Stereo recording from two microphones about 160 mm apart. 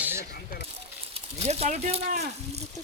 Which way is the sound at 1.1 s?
40° right (ahead or behind).